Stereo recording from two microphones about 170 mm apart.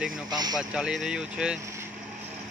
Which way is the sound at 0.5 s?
5° right (ahead or behind).